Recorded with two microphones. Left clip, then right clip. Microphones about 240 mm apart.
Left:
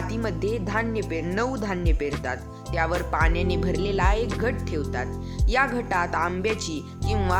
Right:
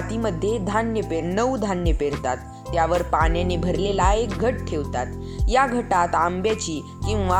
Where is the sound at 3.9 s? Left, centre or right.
Centre.